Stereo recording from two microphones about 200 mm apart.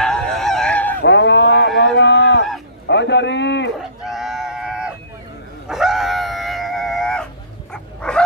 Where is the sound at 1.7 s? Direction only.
65° left (ahead or behind).